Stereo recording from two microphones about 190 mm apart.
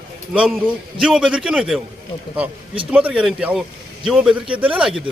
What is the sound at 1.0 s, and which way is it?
Speech, 5° right (ahead or behind).